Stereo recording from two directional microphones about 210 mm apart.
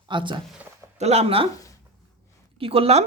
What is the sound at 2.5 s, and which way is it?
Speech, 25° right (ahead or behind).